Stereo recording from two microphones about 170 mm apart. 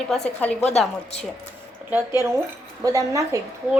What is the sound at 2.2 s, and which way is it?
A woman's voice, 15° right (ahead or behind).